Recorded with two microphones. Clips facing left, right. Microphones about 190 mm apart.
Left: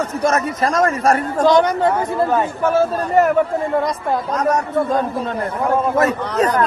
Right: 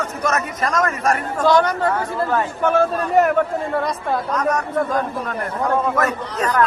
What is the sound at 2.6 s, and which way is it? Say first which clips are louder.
Speech: left 1 dB; 5° left (ahead or behind).